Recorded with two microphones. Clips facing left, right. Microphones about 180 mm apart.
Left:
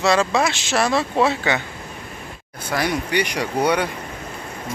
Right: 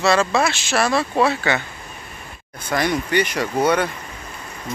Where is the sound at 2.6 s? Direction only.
10° left (ahead or behind).